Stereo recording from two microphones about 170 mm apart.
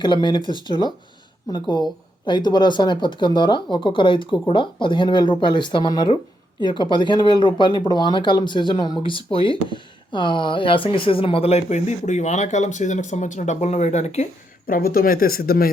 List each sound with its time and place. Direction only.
0.0 s speech: 25° left (ahead or behind)
14.7 s speech: 60° left (ahead or behind)